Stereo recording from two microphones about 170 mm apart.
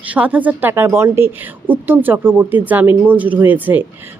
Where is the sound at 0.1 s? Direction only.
10° right (ahead or behind).